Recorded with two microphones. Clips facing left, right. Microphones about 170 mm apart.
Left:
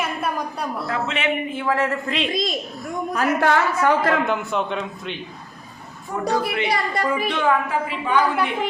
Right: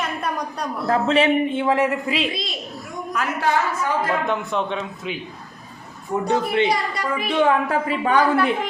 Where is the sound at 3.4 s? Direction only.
65° left (ahead or behind).